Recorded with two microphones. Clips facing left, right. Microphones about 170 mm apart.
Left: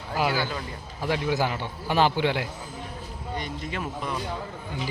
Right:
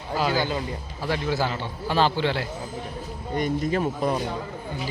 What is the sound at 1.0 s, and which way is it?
A man's voice, 15° left (ahead or behind).